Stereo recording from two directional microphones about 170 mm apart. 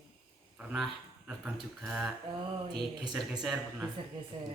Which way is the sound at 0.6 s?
5° right (ahead or behind).